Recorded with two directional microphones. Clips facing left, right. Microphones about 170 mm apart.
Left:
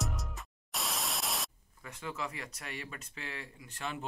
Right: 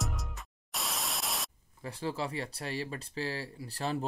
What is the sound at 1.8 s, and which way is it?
Speech, 30° right (ahead or behind).